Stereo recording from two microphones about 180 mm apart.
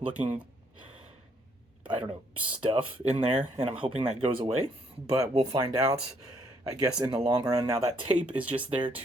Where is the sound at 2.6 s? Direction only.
35° right (ahead or behind).